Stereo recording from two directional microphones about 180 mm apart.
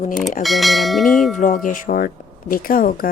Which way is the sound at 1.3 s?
45° left (ahead or behind).